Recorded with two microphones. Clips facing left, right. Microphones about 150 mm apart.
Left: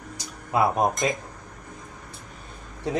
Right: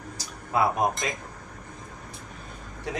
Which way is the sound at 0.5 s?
20° left (ahead or behind).